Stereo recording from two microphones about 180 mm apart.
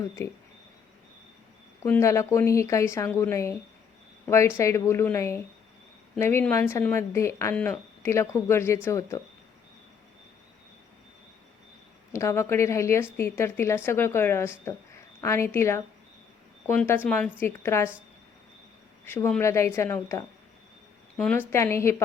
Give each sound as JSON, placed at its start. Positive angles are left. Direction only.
{"t": 1.8, "sound": "speech", "side_deg": 15}
{"t": 12.1, "sound": "speech", "side_deg": 15}
{"t": 19.0, "sound": "speech", "side_deg": 15}